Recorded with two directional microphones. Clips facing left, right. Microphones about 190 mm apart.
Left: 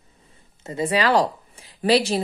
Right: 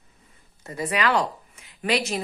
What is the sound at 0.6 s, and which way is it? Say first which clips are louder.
Speech: left 4 dB; 25° left (ahead or behind).